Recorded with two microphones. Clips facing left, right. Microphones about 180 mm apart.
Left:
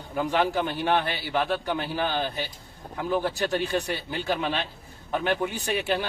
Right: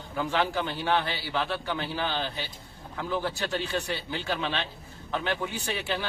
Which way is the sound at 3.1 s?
15° left (ahead or behind).